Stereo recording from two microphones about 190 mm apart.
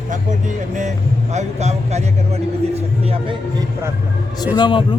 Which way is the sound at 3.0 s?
30° right (ahead or behind).